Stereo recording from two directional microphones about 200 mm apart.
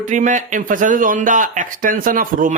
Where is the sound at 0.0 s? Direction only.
40° right (ahead or behind).